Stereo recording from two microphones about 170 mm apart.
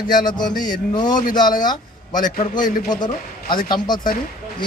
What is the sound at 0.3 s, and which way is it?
A man's voice, 25° left (ahead or behind).